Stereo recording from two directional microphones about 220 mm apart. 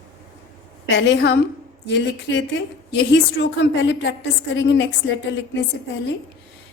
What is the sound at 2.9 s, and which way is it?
A woman's voice, 55° left (ahead or behind).